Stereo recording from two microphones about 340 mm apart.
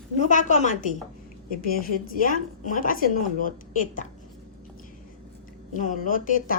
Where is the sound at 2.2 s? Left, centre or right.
Left.